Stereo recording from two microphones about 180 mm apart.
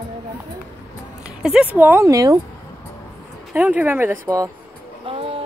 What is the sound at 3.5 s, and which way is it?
Speech, 10° right (ahead or behind).